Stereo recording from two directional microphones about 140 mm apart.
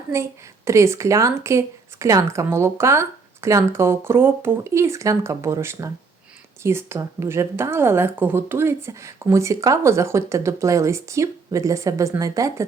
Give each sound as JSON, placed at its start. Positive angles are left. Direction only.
{"t": 0.1, "sound": "a woman's voice", "side_deg": -20}